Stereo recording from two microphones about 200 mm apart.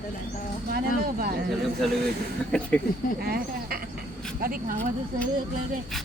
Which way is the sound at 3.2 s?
50° right (ahead or behind).